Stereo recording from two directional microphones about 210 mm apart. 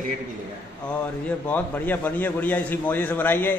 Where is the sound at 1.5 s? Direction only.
10° left (ahead or behind).